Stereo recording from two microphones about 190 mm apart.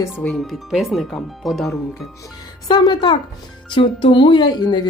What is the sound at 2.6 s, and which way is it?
Speech, 20° left (ahead or behind).